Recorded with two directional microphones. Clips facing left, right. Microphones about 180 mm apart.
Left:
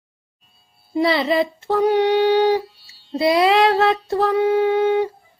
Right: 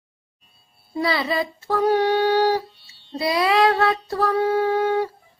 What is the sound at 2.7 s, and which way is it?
Music, 5° left (ahead or behind).